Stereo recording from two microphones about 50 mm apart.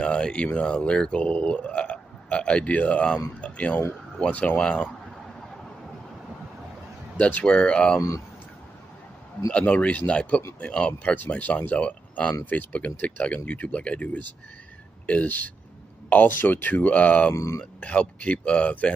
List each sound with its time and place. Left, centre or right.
0.0 s speech: left
7.2 s speech: left
7.4 s speech: left
9.5 s speech: left
11.1 s speech: left